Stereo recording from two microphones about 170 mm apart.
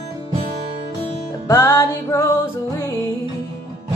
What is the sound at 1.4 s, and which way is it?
Music, 15° left (ahead or behind).